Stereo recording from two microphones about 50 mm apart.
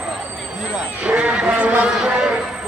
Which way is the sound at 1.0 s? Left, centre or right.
Right.